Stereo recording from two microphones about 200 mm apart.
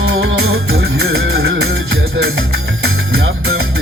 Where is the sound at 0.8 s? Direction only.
75° right (ahead or behind).